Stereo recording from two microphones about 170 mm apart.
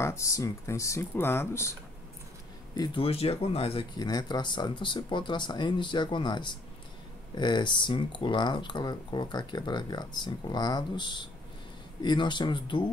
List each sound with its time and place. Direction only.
0.0 s speech: 15° left (ahead or behind)
2.7 s speech: 25° left (ahead or behind)